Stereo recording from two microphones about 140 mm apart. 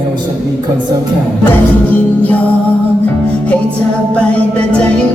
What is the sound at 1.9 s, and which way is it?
Music, 10° left (ahead or behind).